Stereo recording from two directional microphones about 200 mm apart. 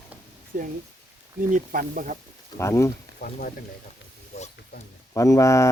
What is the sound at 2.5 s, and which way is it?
Speech, 15° left (ahead or behind).